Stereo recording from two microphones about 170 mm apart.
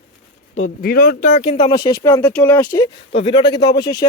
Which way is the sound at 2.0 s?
25° left (ahead or behind).